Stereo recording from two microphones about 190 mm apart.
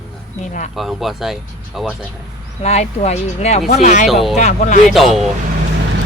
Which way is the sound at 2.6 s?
35° left (ahead or behind).